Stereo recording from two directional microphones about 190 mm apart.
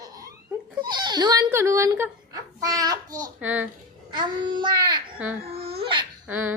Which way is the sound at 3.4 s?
10° right (ahead or behind).